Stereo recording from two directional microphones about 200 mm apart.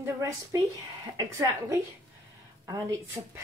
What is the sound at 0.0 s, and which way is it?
A woman's voice, 15° right (ahead or behind).